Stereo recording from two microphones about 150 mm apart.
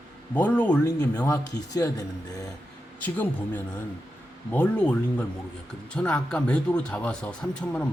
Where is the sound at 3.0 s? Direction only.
10° left (ahead or behind).